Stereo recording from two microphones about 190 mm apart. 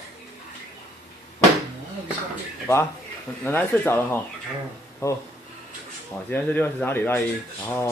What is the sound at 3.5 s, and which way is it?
Speech, 10° left (ahead or behind).